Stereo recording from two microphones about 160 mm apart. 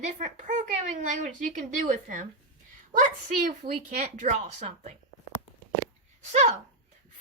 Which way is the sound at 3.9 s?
50° right (ahead or behind).